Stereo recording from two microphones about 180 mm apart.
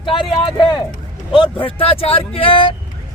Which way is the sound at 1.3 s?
30° left (ahead or behind).